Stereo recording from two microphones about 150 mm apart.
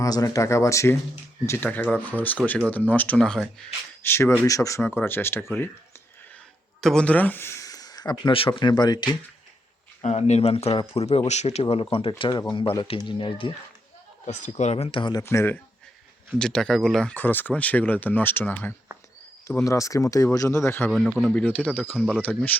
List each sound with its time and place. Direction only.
0.0 s speech: 25° left (ahead or behind); by 3.7 s 5° left (ahead or behind)
4.0 s speech: 15° left (ahead or behind)
6.8 s speech: 5° left (ahead or behind); by 9.0 s 30° left (ahead or behind)
10.0 s speech: 50° left (ahead or behind); by 13.5 s 35° left (ahead or behind)
14.3 s speech: 50° left (ahead or behind); by 15.2 s 35° left (ahead or behind)
15.2 s speech: 15° left (ahead or behind)
16.4 s speech: 5° left (ahead or behind)
20.9 s speech: centre (ahead or behind)
21.2 s speech: 10° left (ahead or behind)